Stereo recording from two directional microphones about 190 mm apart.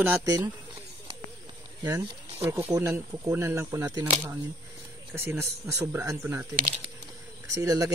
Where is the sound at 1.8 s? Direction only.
20° right (ahead or behind).